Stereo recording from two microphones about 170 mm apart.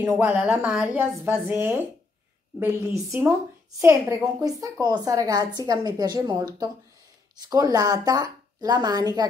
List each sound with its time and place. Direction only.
0.0 s a woman's voice: 10° right (ahead or behind)